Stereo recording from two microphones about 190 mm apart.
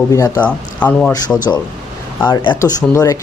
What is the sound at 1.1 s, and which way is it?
Speech, 20° left (ahead or behind).